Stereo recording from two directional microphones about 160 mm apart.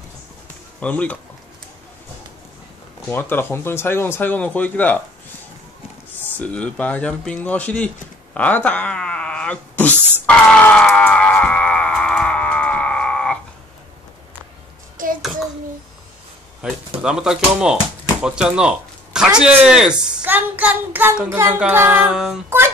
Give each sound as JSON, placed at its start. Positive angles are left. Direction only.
{"t": 0.7, "sound": "speech", "side_deg": 10}
{"t": 3.1, "sound": "speech", "side_deg": 15}
{"t": 6.3, "sound": "speech", "side_deg": 10}
{"t": 10.2, "sound": "music", "side_deg": 10}
{"t": 15.0, "sound": "hands", "side_deg": -55}
{"t": 17.0, "sound": "speech", "side_deg": -5}